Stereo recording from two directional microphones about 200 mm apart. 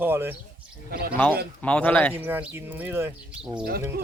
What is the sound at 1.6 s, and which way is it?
Speech, 5° left (ahead or behind).